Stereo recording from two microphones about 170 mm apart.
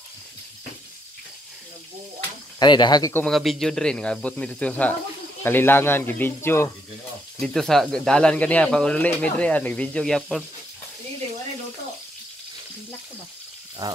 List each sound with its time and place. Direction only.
2.6 s speech: 25° left (ahead or behind)
3.3 s speech: centre (ahead or behind)
7.3 s speech: 5° left (ahead or behind)
13.8 s speech: 20° right (ahead or behind)